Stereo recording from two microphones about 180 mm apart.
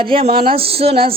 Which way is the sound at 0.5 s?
30° right (ahead or behind).